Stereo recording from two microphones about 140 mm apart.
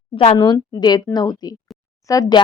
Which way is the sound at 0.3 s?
30° left (ahead or behind).